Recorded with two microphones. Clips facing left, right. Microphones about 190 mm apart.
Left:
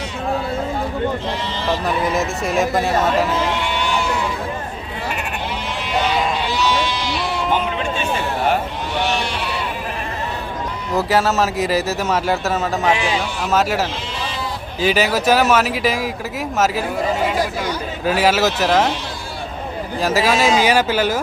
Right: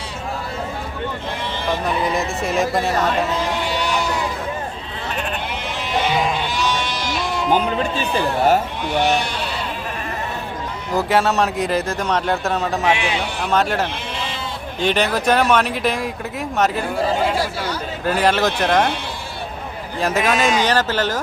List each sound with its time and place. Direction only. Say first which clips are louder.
1.8 s speech: left 1 dB; centre (ahead or behind)
3.7 s a sound: even; 40° right (ahead or behind)
6.6 s sheep: left 3 dB; 50° right (ahead or behind)
10.9 s speech: even; centre (ahead or behind)
17.4 s a sound: left 2 dB; 15° left (ahead or behind)
18.0 s speech: left 1 dB; 5° left (ahead or behind)
20.0 s speech: left 1 dB; centre (ahead or behind)